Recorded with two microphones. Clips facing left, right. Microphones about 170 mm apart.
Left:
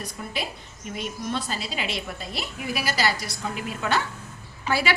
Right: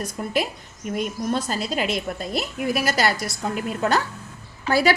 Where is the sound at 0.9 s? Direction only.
45° right (ahead or behind).